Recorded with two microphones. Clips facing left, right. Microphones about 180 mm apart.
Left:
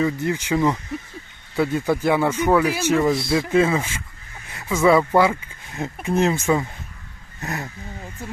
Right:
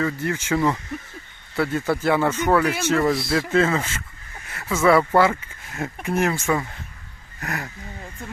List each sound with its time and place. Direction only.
0.0 s speech: 15° left (ahead or behind)
3.0 s speech: centre (ahead or behind)
3.5 s speech: 10° left (ahead or behind)
7.4 s speech: 25° left (ahead or behind)
8.2 s speech: 5° left (ahead or behind)